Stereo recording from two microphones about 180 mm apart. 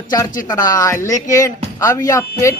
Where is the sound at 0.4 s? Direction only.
20° left (ahead or behind).